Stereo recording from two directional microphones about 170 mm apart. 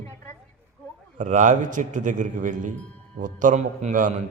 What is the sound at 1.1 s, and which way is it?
A man's voice, 50° right (ahead or behind).